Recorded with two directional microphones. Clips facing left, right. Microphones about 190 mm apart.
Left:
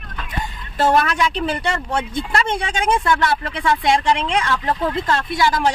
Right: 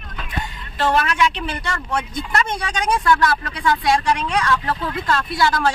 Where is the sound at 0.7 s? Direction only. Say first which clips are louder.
Left 3 dB; 40° left (ahead or behind).